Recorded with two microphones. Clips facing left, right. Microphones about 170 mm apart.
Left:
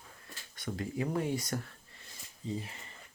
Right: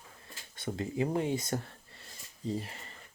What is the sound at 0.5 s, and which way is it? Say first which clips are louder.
Speech: right 2 dB; 25° right (ahead or behind).